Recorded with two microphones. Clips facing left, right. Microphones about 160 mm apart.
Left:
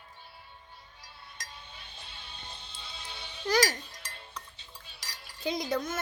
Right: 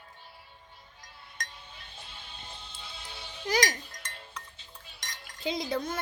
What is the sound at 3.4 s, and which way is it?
Music, 15° right (ahead or behind).